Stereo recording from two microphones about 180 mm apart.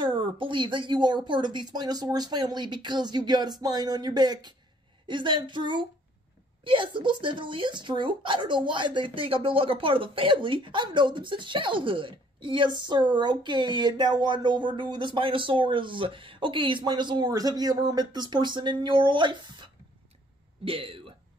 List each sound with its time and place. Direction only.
0.0 s speech: 30° right (ahead or behind)